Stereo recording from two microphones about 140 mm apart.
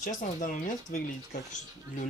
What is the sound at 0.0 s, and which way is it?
Speech, 65° left (ahead or behind).